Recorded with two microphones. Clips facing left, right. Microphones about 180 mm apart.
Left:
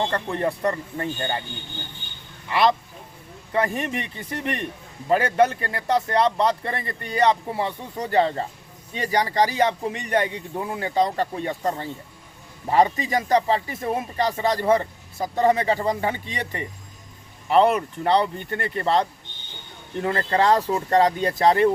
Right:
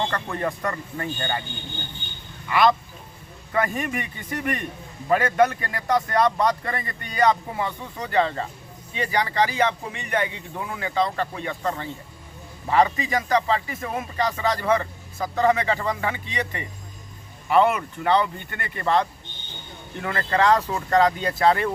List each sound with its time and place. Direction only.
0.1 s speech: 30° left (ahead or behind)
3.5 s a man's voice: 30° left (ahead or behind)